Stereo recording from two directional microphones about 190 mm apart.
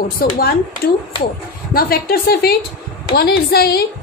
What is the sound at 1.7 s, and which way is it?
Speech, 50° left (ahead or behind).